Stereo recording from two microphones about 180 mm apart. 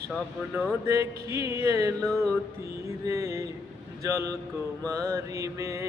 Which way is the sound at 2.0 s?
5° left (ahead or behind).